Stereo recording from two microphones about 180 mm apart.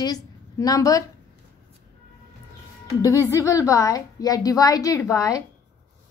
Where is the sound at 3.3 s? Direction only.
15° left (ahead or behind).